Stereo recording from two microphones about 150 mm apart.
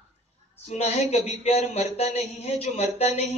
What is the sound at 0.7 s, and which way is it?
A man's voice, 45° left (ahead or behind).